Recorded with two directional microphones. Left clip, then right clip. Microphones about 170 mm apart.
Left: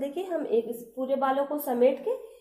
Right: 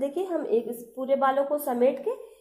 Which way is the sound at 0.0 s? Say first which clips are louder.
Right 3 dB; 35° right (ahead or behind).